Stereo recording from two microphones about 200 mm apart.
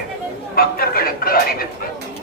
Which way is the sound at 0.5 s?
50° left (ahead or behind).